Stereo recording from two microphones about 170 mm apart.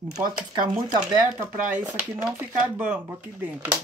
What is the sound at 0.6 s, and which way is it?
Speech, 50° right (ahead or behind).